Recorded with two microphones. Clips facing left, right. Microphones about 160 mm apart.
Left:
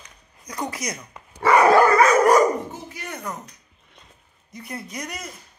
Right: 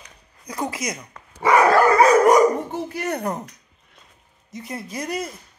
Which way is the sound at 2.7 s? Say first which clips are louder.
Right 9 dB; 60° right (ahead or behind).